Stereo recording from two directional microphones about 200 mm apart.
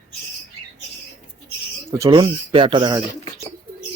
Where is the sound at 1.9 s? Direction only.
20° right (ahead or behind).